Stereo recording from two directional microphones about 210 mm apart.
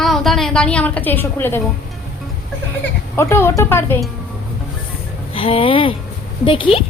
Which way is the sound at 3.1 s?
10° left (ahead or behind).